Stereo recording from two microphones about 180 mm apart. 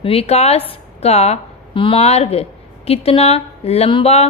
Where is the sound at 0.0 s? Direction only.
30° left (ahead or behind).